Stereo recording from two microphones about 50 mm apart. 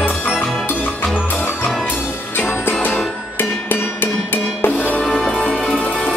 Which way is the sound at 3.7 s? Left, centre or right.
Left.